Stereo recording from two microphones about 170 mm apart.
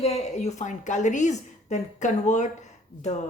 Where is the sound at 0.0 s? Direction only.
40° left (ahead or behind).